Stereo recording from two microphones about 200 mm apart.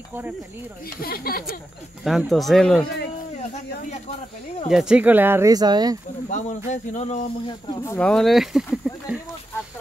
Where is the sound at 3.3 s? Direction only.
35° left (ahead or behind).